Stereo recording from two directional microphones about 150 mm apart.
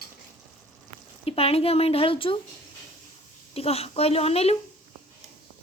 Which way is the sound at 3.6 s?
40° left (ahead or behind).